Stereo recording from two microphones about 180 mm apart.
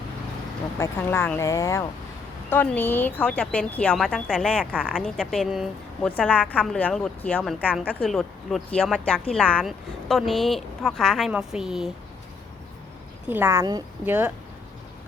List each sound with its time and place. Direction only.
0.8 s speech: 15° left (ahead or behind); by 11.9 s 5° right (ahead or behind)
13.2 s a woman's voice: 10° right (ahead or behind)